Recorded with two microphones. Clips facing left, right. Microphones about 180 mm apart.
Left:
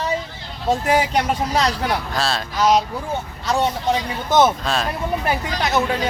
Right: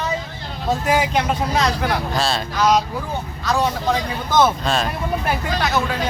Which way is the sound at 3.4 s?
25° left (ahead or behind).